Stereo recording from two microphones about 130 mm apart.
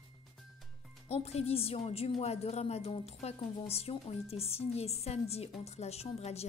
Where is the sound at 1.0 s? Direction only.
55° left (ahead or behind).